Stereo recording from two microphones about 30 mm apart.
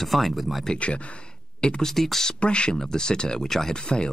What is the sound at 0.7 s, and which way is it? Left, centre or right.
Speech, left.